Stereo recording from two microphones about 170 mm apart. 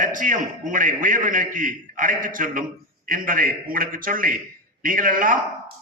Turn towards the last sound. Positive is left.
turn(degrees=-50)  # may be behind; listen again after turning